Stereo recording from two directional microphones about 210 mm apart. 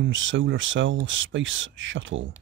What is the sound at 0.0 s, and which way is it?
Speech, 65° right (ahead or behind).